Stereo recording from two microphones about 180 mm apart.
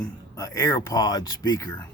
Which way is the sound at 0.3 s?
20° left (ahead or behind).